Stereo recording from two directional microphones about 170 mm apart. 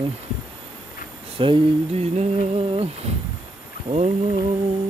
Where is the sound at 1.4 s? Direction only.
35° right (ahead or behind).